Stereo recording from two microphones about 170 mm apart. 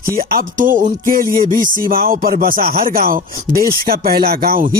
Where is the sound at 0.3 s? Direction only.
55° right (ahead or behind).